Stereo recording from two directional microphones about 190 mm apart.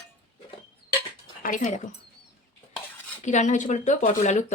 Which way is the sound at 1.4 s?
45° left (ahead or behind).